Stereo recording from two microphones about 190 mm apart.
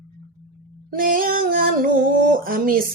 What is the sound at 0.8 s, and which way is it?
Female singing, 50° right (ahead or behind).